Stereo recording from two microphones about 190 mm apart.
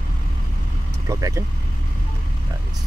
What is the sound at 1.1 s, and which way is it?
Speech, 15° right (ahead or behind).